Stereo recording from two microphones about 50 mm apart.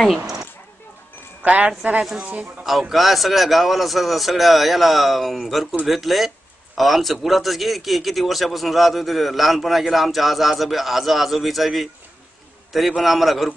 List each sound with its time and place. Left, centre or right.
1.4 s speech: right
2.9 s a man's voice: centre
12.9 s a man's voice: centre